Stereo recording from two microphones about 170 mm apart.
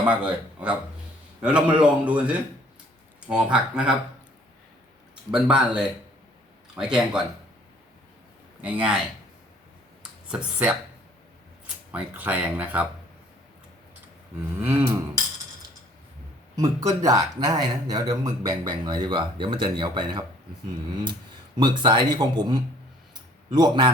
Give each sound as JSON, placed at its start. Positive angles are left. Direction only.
{"t": 0.0, "sound": "a man's voice", "side_deg": -10}
{"t": 5.3, "sound": "speech", "side_deg": -5}
{"t": 8.6, "sound": "a man's voice", "side_deg": -10}
{"t": 10.0, "sound": "a sound", "side_deg": -5}
{"t": 11.6, "sound": "speech", "side_deg": -10}
{"t": 14.7, "sound": "a man's voice", "side_deg": -15}
{"t": 16.6, "sound": "a man's voice", "side_deg": -20}
{"t": 21.6, "sound": "a man's voice", "side_deg": -30}